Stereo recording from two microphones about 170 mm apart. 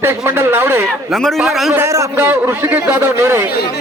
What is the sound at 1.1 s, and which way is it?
Speech, centre (ahead or behind).